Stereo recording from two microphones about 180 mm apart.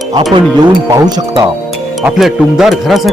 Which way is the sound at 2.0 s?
5° right (ahead or behind).